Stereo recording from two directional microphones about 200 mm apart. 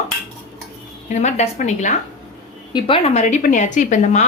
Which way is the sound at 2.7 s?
25° left (ahead or behind).